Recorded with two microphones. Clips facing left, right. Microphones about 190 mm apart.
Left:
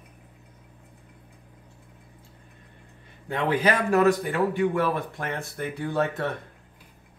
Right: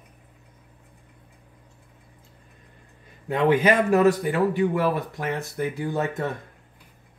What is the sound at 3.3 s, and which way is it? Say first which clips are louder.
Speech: right 4 dB; 20° right (ahead or behind).